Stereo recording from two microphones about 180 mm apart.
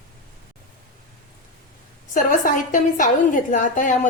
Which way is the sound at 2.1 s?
50° left (ahead or behind).